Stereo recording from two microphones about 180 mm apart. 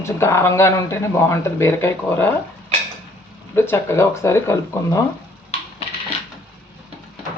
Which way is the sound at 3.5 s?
15° left (ahead or behind).